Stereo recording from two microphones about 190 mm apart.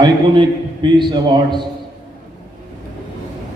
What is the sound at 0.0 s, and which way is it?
A man's voice, 25° right (ahead or behind).